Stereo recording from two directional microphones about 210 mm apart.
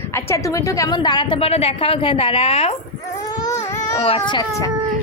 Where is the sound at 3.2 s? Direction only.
15° left (ahead or behind).